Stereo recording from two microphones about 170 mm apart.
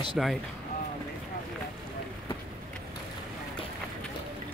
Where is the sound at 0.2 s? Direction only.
5° right (ahead or behind).